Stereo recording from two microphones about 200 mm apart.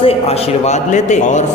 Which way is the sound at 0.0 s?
30° left (ahead or behind).